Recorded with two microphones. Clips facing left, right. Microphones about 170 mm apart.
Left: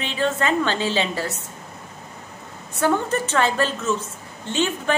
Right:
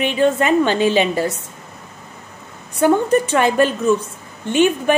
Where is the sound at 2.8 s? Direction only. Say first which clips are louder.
Right 7 dB; 15° right (ahead or behind).